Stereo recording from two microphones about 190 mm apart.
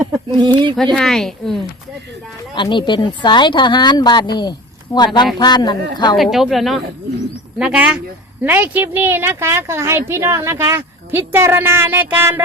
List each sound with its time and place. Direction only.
0.3 s speech: 25° right (ahead or behind)
0.9 s a woman's voice: centre (ahead or behind)
2.6 s speech: 25° left (ahead or behind)
6.1 s a woman's voice: centre (ahead or behind)